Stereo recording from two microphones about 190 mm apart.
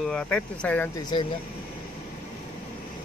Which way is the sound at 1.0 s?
25° left (ahead or behind).